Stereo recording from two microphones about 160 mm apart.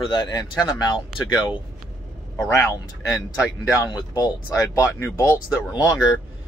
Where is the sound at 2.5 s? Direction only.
20° left (ahead or behind).